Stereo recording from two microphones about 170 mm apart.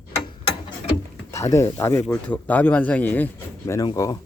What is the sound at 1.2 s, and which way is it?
Speech, 15° left (ahead or behind).